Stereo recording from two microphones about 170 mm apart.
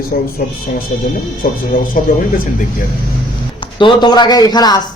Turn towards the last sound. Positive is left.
turn(degrees=25)  # may be behind; listen again after turning